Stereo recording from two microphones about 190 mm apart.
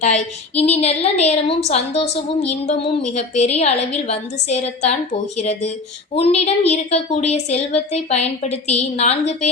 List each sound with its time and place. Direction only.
0.0 s a woman's voice: 35° left (ahead or behind)